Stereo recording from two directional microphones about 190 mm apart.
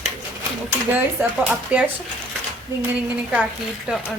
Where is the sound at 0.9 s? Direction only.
10° right (ahead or behind).